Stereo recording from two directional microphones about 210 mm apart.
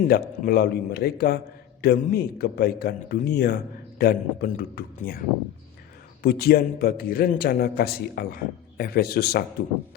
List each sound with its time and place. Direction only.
0.1 s a man's voice: 45° left (ahead or behind)
6.2 s a man's voice: 45° left (ahead or behind)